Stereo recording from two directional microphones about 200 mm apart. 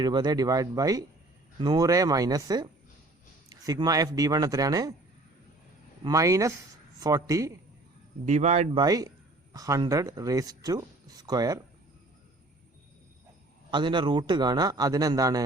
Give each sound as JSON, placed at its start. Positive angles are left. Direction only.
{"t": 0.0, "sound": "a man's voice", "side_deg": -20}
{"t": 6.0, "sound": "speech", "side_deg": -15}
{"t": 8.2, "sound": "speech", "side_deg": -35}
{"t": 8.7, "sound": "speech", "side_deg": -20}
{"t": 13.7, "sound": "a man's voice", "side_deg": -25}